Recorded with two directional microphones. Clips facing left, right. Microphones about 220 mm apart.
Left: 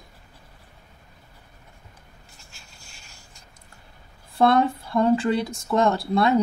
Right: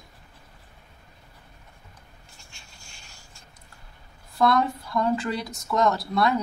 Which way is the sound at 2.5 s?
Centre (ahead or behind).